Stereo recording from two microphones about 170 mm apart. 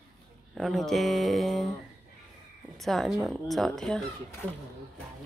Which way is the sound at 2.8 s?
Centre (ahead or behind).